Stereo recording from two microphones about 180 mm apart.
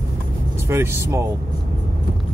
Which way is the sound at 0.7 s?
15° right (ahead or behind).